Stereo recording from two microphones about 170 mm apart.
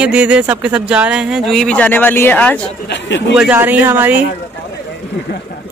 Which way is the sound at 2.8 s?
90° left.